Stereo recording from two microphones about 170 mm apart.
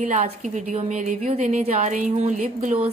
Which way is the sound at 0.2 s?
40° right (ahead or behind).